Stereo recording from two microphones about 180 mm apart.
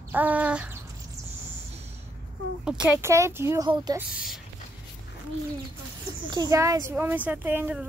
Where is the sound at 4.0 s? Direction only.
5° right (ahead or behind).